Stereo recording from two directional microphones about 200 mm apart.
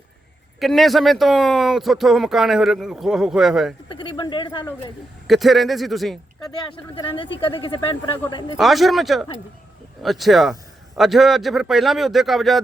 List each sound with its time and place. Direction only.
0.6 s speech: centre (ahead or behind)
3.8 s speech: 25° left (ahead or behind)
5.3 s speech: centre (ahead or behind)
6.9 s speech: 25° left (ahead or behind)
8.5 s speech: centre (ahead or behind)